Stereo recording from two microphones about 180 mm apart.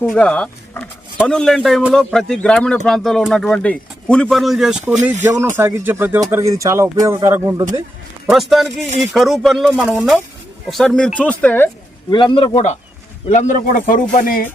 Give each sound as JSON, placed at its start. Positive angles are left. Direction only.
{"t": 0.0, "sound": "a man's voice", "side_deg": 5}
{"t": 5.2, "sound": "speech", "side_deg": -15}
{"t": 8.3, "sound": "a man's voice", "side_deg": 0}
{"t": 12.1, "sound": "a man's voice", "side_deg": 25}